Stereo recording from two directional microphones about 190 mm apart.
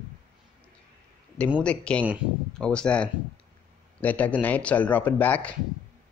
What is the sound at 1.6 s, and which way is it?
Speech, 5° left (ahead or behind).